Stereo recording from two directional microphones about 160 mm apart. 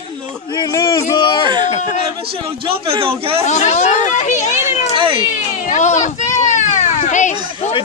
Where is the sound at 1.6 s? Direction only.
45° left (ahead or behind).